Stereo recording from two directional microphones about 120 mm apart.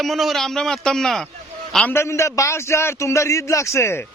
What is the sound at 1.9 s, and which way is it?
A man's voice, 25° left (ahead or behind).